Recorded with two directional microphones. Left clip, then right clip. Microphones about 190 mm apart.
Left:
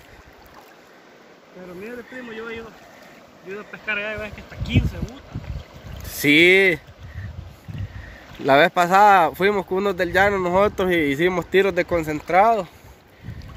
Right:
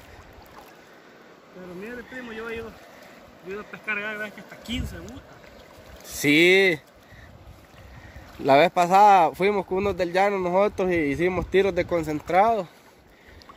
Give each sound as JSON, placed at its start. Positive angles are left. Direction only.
{"t": 1.9, "sound": "speech", "side_deg": -30}
{"t": 3.4, "sound": "speech", "side_deg": -55}
{"t": 6.0, "sound": "speech", "side_deg": 0}
{"t": 8.5, "sound": "speech", "side_deg": -5}